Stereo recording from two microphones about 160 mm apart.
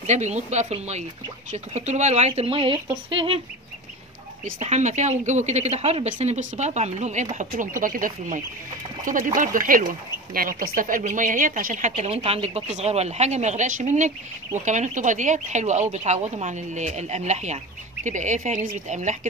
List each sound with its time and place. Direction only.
0.0 s speech: 45° right (ahead or behind)
4.6 s speech: 45° right (ahead or behind)